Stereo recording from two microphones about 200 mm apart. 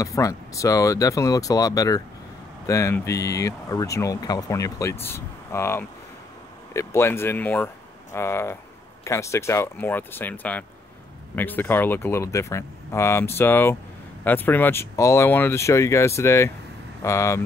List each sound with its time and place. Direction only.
0.0 s speech: 15° left (ahead or behind)